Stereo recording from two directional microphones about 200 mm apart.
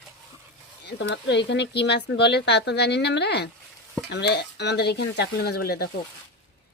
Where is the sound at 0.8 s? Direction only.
65° left (ahead or behind).